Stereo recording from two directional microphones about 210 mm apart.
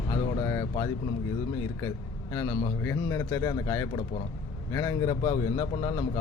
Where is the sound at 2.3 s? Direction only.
15° left (ahead or behind).